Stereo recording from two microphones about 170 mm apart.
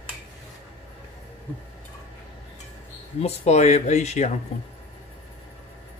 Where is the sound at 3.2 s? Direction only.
40° left (ahead or behind).